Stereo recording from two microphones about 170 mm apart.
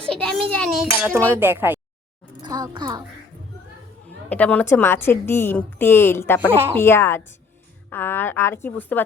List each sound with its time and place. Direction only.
0.1 s a child's voice: 5° left (ahead or behind)
1.3 s speech: 10° right (ahead or behind)
2.4 s speech: 25° right (ahead or behind)
4.3 s a woman's voice: 10° left (ahead or behind)
6.4 s speech: 15° right (ahead or behind)
6.7 s a woman's voice: 15° left (ahead or behind)